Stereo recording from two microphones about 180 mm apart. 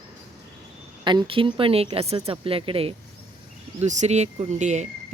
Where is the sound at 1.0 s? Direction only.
25° right (ahead or behind).